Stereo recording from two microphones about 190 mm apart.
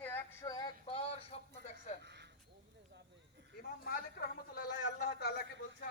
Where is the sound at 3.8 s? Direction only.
50° left (ahead or behind).